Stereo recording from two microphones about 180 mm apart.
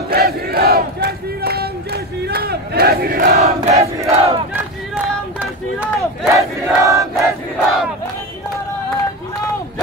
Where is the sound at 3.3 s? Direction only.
35° right (ahead or behind).